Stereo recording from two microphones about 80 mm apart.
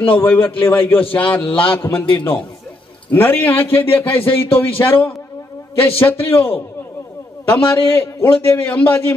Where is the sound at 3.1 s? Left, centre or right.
Left.